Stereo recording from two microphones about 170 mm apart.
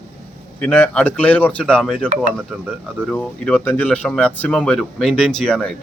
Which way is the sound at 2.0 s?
50° right (ahead or behind).